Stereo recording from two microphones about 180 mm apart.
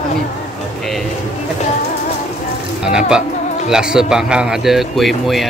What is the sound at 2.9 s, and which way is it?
A man's voice, 5° right (ahead or behind).